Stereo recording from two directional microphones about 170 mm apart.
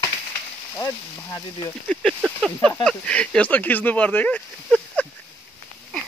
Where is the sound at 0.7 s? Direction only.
20° left (ahead or behind).